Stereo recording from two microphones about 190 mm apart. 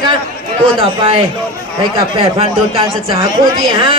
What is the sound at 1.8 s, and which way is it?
A man's voice, 30° right (ahead or behind).